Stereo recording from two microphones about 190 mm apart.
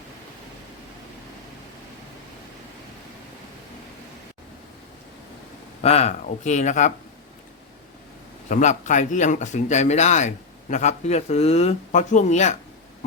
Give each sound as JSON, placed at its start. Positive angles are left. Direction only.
{"t": 5.8, "sound": "a man's voice", "side_deg": 35}
{"t": 8.4, "sound": "a man's voice", "side_deg": 40}